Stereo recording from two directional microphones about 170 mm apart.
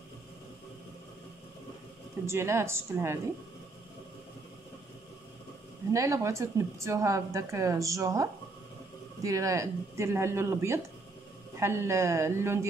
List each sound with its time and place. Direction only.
2.2 s a woman's voice: 15° right (ahead or behind)
5.9 s a woman's voice: 20° right (ahead or behind)